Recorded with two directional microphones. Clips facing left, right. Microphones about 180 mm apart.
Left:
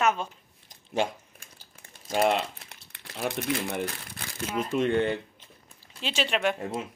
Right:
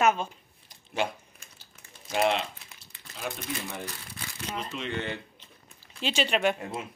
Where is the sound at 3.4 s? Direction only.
65° left (ahead or behind).